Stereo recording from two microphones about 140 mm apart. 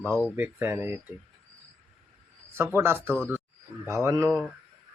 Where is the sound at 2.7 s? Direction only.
15° right (ahead or behind).